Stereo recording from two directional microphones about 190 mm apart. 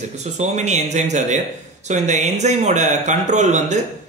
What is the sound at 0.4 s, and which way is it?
Speech, 35° right (ahead or behind).